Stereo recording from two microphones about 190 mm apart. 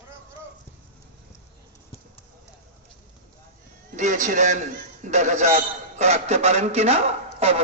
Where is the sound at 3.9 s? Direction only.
40° right (ahead or behind).